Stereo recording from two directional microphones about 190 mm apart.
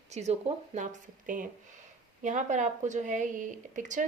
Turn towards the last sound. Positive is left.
turn(degrees=-40)  # may be behind; listen again after turning